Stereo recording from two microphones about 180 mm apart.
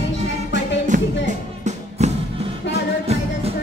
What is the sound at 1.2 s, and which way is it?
Music, 40° right (ahead or behind).